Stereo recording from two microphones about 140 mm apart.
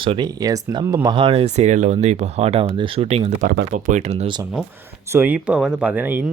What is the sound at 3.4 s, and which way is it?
Speech, 70° right (ahead or behind).